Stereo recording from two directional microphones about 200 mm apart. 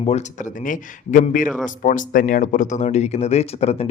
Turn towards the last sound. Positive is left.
turn(degrees=30)  # may be behind; listen again after turning